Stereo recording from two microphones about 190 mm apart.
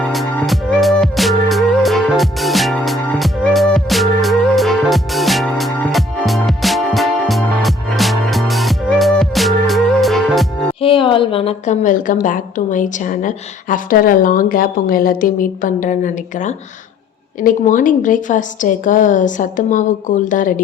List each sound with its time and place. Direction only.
0.1 s music: centre (ahead or behind)
10.8 s a woman's voice: 30° left (ahead or behind)